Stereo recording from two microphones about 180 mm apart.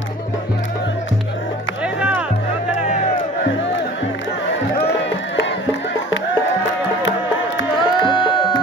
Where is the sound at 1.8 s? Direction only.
5° right (ahead or behind).